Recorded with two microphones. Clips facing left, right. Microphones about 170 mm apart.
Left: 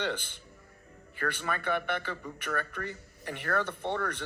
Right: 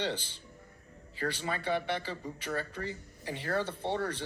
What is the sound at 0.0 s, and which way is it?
Speech, 60° left (ahead or behind).